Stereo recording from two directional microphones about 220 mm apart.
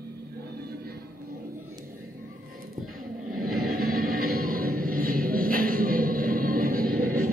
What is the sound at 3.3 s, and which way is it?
Music, 40° right (ahead or behind).